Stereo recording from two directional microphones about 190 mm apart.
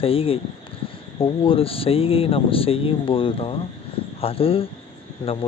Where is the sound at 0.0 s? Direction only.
30° left (ahead or behind).